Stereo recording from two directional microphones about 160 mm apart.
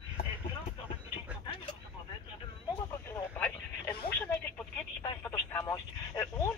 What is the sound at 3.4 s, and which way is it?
Radio, 10° left (ahead or behind).